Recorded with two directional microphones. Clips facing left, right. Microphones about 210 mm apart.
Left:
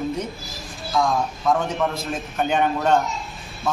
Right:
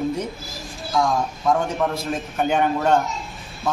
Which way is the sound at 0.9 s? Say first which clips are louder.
Even; 10° right (ahead or behind).